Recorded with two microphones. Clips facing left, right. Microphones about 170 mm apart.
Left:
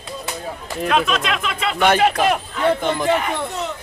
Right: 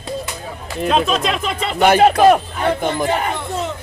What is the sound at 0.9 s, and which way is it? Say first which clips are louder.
Speech: right 2 dB; 35° right (ahead or behind).